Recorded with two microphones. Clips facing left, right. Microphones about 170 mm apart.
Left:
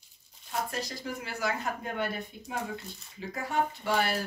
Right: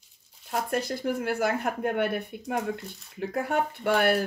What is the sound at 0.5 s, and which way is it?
Speech, 60° right (ahead or behind).